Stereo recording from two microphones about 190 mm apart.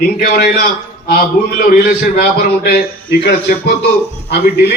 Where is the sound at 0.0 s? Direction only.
55° left (ahead or behind).